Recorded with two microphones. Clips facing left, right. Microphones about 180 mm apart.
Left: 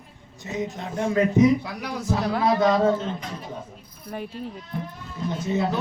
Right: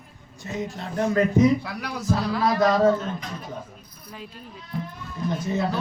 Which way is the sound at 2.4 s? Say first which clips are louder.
Even; 20° left (ahead or behind).